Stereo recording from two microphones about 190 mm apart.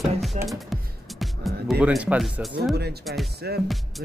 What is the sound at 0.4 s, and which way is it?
Music, 40° right (ahead or behind).